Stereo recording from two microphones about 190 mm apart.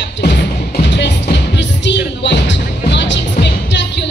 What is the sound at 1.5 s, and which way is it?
Music, 65° left (ahead or behind).